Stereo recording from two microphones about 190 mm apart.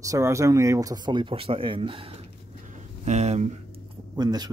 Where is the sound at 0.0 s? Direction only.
15° right (ahead or behind); by 3.5 s 35° right (ahead or behind).